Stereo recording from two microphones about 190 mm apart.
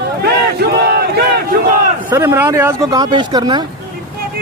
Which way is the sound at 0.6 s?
55° right (ahead or behind).